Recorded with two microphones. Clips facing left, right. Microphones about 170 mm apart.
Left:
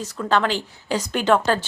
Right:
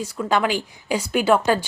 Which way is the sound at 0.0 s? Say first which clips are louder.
Even; 10° right (ahead or behind).